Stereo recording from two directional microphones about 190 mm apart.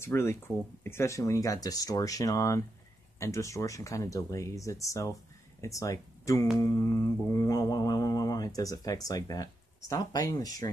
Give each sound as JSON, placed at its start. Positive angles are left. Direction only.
{"t": 0.0, "sound": "speech", "side_deg": 15}
{"t": 6.6, "sound": "music", "side_deg": 15}